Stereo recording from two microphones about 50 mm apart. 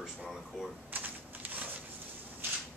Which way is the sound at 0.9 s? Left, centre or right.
Right.